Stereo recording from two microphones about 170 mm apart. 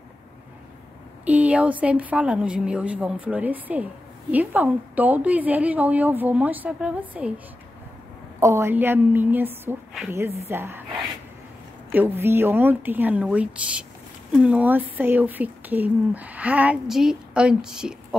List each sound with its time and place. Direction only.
1.2 s a woman's voice: 10° right (ahead or behind)
8.4 s a woman's voice: 15° right (ahead or behind)
11.9 s a woman's voice: 15° right (ahead or behind)